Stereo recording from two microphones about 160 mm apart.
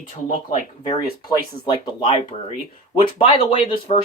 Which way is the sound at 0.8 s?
25° left (ahead or behind).